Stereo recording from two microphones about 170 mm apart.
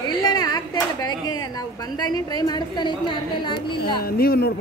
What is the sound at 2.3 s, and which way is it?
A woman's voice, 25° left (ahead or behind).